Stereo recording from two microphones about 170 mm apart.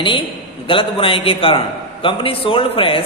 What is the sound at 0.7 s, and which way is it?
A man's voice, 30° left (ahead or behind).